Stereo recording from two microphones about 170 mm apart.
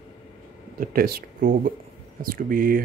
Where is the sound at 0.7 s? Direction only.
60° right (ahead or behind).